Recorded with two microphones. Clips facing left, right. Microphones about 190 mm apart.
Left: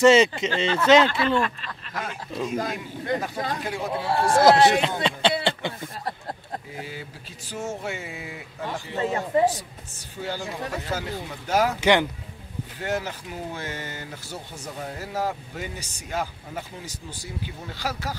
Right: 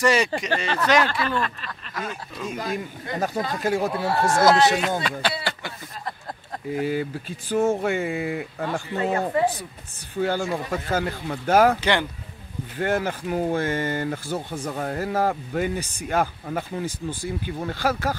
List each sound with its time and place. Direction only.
0.0 s speech: 25° left (ahead or behind)
3.2 s speech: 45° right (ahead or behind)
3.9 s speech: 25° left (ahead or behind)
5.4 s a sound: 25° left (ahead or behind)
6.7 s speech: 55° right (ahead or behind)
8.9 s speech: 20° left (ahead or behind)
10.2 s speech: 55° right (ahead or behind)
11.8 s speech: 15° left (ahead or behind)
12.7 s speech: 55° right (ahead or behind)